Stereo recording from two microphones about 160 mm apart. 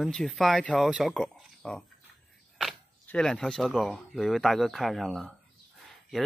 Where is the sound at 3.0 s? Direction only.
5° left (ahead or behind).